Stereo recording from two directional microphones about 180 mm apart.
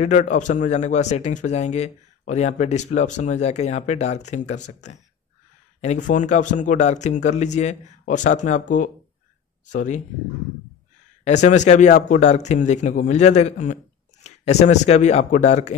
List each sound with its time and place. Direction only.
0.0 s speech: 40° left (ahead or behind)
11.2 s speech: 40° left (ahead or behind)